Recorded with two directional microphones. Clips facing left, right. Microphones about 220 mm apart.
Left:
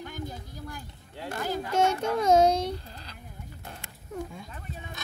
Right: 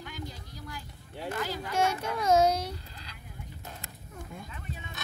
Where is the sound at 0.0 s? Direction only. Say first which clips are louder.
Left 4 dB; 50° left (ahead or behind).